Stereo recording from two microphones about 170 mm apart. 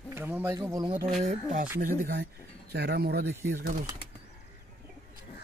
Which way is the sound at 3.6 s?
55° right (ahead or behind).